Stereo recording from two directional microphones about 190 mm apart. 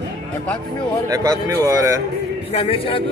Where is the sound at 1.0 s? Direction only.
20° right (ahead or behind).